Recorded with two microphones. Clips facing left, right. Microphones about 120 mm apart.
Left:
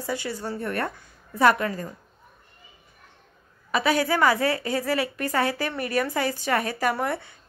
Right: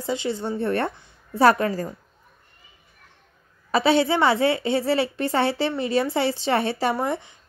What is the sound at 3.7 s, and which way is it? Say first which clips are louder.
A woman's voice: right 4 dB; 30° right (ahead or behind).